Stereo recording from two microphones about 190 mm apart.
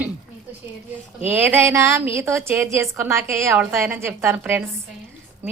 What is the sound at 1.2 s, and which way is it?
A woman's voice, 10° right (ahead or behind).